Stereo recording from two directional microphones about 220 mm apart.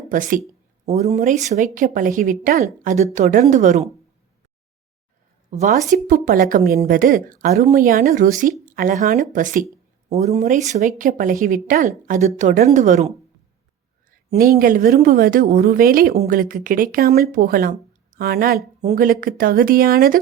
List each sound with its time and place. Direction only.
0.1 s a woman's voice: 35° right (ahead or behind)
5.5 s a woman's voice: 35° right (ahead or behind)
14.3 s a woman's voice: 40° right (ahead or behind)